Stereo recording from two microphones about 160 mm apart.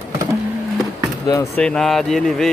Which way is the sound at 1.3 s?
20° left (ahead or behind).